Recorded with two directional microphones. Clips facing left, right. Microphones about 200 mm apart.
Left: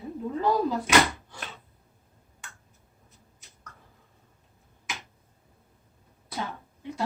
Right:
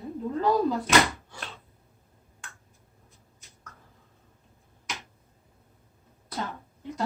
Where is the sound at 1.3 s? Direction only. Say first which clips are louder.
Even; centre (ahead or behind).